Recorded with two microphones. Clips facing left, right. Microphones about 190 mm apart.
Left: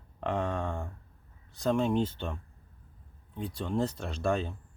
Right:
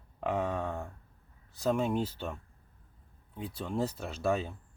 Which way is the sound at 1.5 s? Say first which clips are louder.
Left 2 dB; 5° right (ahead or behind).